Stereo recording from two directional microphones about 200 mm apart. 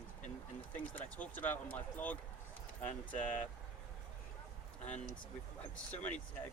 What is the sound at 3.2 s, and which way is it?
Speech, 10° left (ahead or behind).